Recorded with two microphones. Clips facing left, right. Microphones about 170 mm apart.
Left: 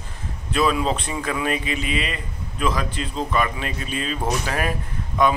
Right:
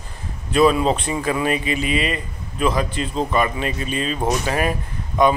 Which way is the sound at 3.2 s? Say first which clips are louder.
Right 3 dB; 30° right (ahead or behind).